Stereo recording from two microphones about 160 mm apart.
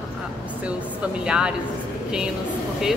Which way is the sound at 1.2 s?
5° right (ahead or behind).